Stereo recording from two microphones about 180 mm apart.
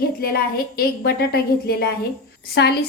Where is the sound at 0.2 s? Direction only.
55° left (ahead or behind).